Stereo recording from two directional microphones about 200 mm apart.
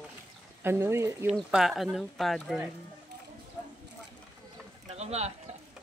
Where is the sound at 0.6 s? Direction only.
15° right (ahead or behind).